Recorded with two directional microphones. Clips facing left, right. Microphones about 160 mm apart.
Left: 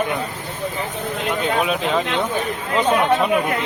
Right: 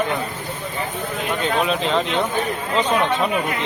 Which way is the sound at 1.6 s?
5° left (ahead or behind).